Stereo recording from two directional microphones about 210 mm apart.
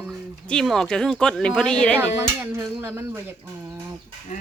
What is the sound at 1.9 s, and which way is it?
Speech, 10° right (ahead or behind).